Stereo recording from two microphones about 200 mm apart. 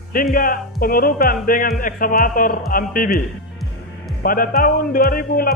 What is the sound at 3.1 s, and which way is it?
Music, centre (ahead or behind).